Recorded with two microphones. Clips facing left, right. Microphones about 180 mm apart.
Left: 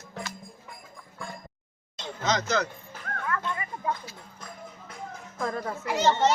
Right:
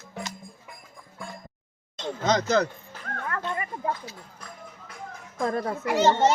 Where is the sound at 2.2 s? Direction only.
55° right (ahead or behind).